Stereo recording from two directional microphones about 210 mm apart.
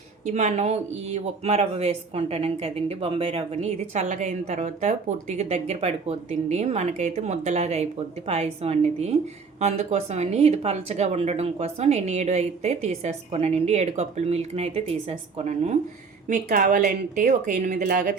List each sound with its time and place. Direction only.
0.3 s speech: 30° right (ahead or behind)